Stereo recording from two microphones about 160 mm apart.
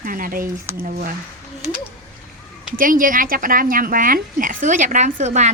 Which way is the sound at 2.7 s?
60° right (ahead or behind).